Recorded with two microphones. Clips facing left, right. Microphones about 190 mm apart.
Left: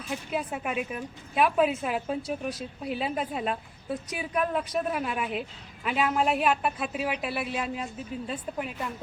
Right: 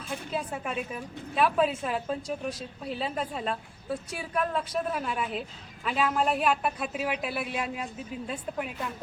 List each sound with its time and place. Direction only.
0.3 s a woman's voice: 10° left (ahead or behind)